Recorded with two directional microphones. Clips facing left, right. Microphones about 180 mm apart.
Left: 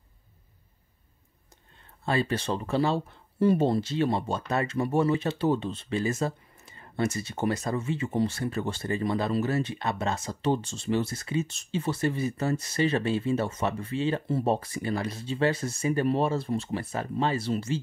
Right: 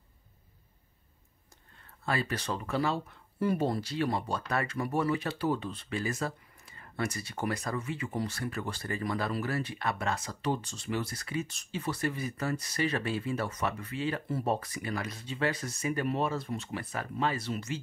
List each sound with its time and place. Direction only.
2.0 s speech: 25° left (ahead or behind)